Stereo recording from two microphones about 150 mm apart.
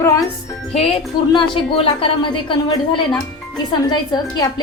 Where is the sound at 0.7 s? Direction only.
40° left (ahead or behind).